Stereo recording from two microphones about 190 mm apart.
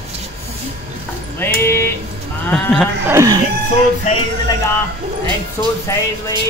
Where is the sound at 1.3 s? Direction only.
10° left (ahead or behind).